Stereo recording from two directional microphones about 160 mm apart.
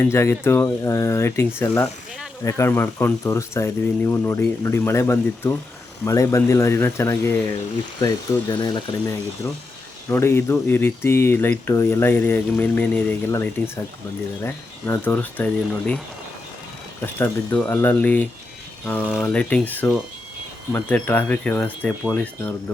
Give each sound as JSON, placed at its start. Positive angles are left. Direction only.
{"t": 0.0, "sound": "speech", "side_deg": 15}
{"t": 7.9, "sound": "speech", "side_deg": 25}
{"t": 10.1, "sound": "speech", "side_deg": 15}
{"t": 17.2, "sound": "speech", "side_deg": 10}